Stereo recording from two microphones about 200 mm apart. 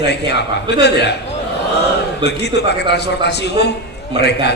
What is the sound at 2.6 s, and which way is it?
A man's voice, 55° left (ahead or behind).